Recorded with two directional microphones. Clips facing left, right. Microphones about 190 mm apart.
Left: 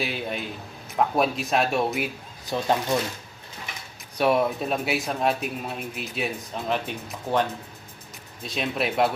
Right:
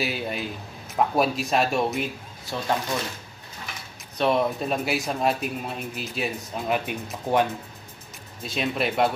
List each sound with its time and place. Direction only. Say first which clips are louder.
0.0 s a man's voice: right 1 dB; 5° right (ahead or behind)
2.5 s speech: left 4 dB; 15° left (ahead or behind)
4.2 s a man's voice: left 1 dB; 5° left (ahead or behind)
6.7 s speech: right 2 dB; 10° right (ahead or behind)
8.5 s a man's voice: right 1 dB; centre (ahead or behind)